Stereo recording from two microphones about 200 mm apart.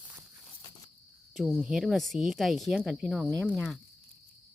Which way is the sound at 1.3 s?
Centre (ahead or behind).